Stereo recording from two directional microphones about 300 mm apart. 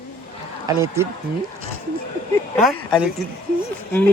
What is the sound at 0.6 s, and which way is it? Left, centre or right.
Speech, centre.